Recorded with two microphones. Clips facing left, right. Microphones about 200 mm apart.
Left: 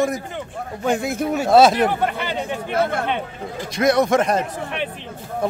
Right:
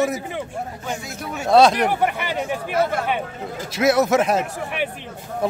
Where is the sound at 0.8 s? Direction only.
55° left (ahead or behind).